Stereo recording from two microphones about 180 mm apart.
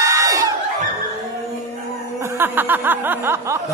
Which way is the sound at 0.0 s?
20° right (ahead or behind).